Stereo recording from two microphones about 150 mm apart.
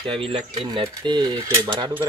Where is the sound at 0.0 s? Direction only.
35° right (ahead or behind).